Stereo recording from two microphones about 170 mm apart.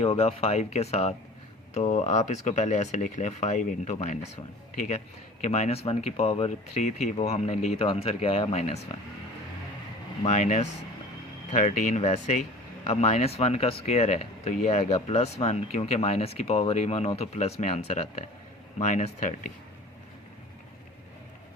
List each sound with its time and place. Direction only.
0.0 s speech: 35° left (ahead or behind)
10.2 s speech: 45° left (ahead or behind)